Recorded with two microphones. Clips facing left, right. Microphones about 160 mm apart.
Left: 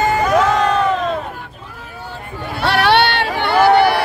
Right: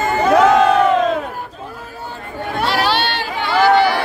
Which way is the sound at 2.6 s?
65° left (ahead or behind).